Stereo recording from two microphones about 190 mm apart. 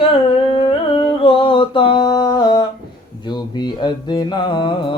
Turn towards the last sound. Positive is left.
turn(degrees=25)  # may be behind; listen again after turning